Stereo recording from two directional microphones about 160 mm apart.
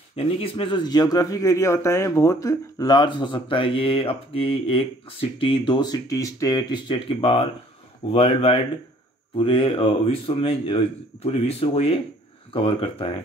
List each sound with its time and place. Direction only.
0.1 s speech: 35° left (ahead or behind)